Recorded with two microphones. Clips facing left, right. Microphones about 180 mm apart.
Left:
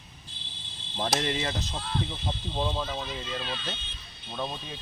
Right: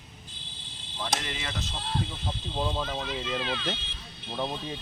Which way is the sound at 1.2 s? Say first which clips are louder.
Left 7 dB; 35° left (ahead or behind).